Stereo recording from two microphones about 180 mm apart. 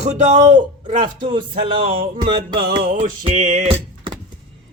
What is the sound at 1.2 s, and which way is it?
Speech, 25° right (ahead or behind).